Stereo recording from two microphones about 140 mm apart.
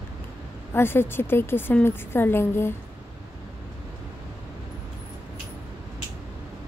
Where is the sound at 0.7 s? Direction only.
15° left (ahead or behind).